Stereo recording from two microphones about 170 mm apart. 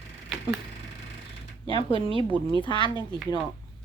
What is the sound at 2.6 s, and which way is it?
Speech, 30° left (ahead or behind).